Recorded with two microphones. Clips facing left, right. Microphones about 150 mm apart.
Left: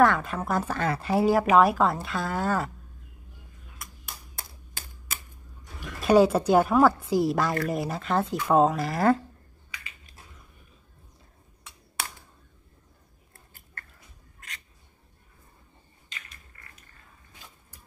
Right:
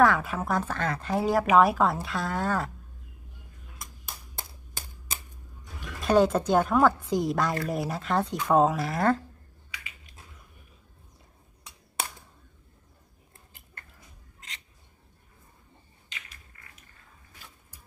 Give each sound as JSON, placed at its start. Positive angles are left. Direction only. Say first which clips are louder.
{"t": 0.0, "sound": "speech", "louder": "left 1 dB", "side_deg": -5}
{"t": 0.6, "sound": "speech", "louder": "left 2 dB", "side_deg": 10}
{"t": 5.9, "sound": "speech", "louder": "left 3 dB", "side_deg": 5}
{"t": 13.5, "sound": "chewing", "louder": "left 4 dB", "side_deg": -20}